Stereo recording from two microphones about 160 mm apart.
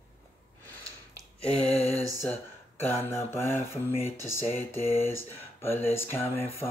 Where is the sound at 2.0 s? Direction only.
20° right (ahead or behind).